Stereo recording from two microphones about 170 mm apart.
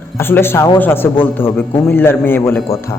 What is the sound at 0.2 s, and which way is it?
A man's voice, 15° left (ahead or behind).